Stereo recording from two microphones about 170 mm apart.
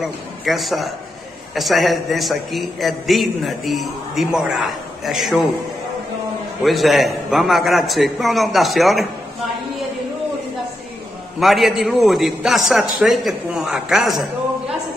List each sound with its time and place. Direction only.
0.0 s a man's voice: centre (ahead or behind)
6.6 s a man's voice: centre (ahead or behind)
11.3 s a man's voice: centre (ahead or behind)